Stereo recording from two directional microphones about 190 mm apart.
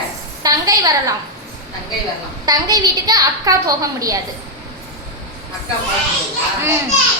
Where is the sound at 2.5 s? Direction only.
20° right (ahead or behind).